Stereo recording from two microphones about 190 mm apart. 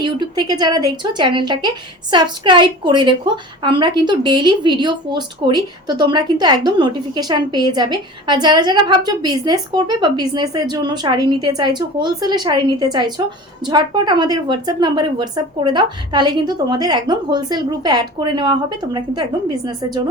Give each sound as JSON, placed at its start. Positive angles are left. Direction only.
{"t": 0.0, "sound": "a woman's voice", "side_deg": -25}